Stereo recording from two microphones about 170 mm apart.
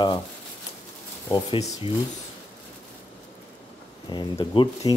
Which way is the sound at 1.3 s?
30° left (ahead or behind).